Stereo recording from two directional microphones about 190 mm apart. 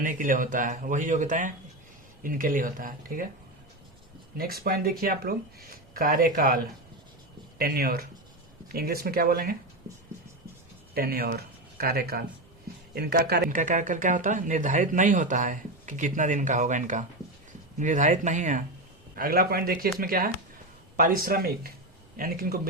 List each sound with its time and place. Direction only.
0.0 s speech: 45° right (ahead or behind)
4.4 s speech: 50° right (ahead or behind)
7.6 s speech: 55° right (ahead or behind)
10.9 s speech: 55° right (ahead or behind)
13.6 s speech: 45° right (ahead or behind)
19.1 s speech: 50° right (ahead or behind)